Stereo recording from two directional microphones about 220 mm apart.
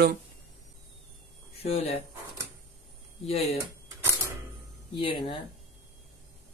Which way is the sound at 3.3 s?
30° left (ahead or behind).